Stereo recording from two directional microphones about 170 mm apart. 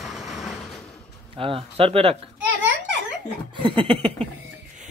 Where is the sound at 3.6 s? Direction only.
30° right (ahead or behind).